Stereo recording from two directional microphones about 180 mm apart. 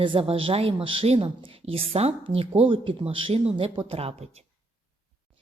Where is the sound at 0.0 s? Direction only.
30° right (ahead or behind).